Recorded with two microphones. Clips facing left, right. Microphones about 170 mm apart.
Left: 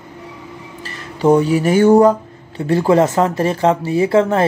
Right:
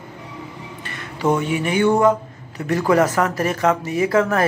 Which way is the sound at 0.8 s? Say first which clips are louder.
Left 6 dB; 30° left (ahead or behind).